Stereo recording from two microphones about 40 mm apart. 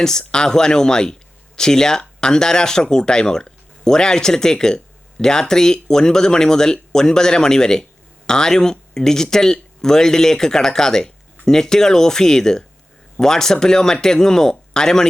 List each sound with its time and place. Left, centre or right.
0.0 s speech: centre